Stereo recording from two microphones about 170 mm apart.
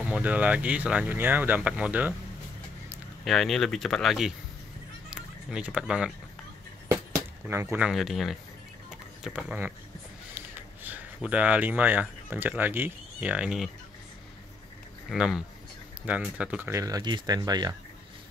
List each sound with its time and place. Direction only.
0.0 s speech: 10° right (ahead or behind)
3.3 s speech: centre (ahead or behind)
7.4 s speech: 10° right (ahead or behind)
7.9 s speech: centre (ahead or behind)
15.0 s speech: 5° right (ahead or behind); by 17.7 s 20° right (ahead or behind)